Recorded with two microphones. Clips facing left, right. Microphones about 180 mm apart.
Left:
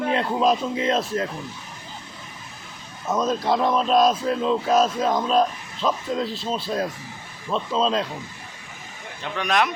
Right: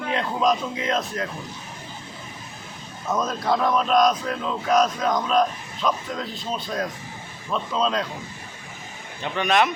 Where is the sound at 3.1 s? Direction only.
20° left (ahead or behind).